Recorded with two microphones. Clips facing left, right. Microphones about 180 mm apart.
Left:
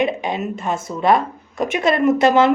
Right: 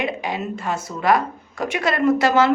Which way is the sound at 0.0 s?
20° left (ahead or behind).